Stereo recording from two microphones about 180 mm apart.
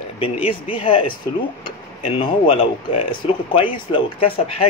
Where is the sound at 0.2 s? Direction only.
30° left (ahead or behind).